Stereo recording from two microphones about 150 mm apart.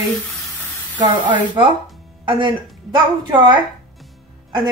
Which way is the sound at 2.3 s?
30° right (ahead or behind).